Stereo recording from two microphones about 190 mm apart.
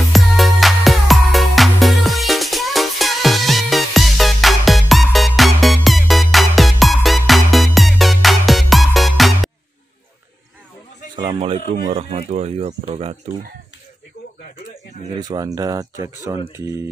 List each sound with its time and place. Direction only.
0.1 s music: centre (ahead or behind)
11.1 s a sound: 20° right (ahead or behind)
12.2 s speech: 35° right (ahead or behind)
15.1 s speech: 20° right (ahead or behind)